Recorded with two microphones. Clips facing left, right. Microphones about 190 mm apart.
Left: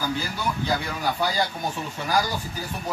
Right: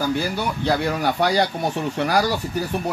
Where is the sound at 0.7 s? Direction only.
70° right (ahead or behind).